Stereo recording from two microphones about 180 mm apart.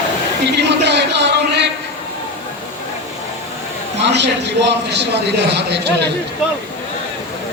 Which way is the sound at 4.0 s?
75° right (ahead or behind).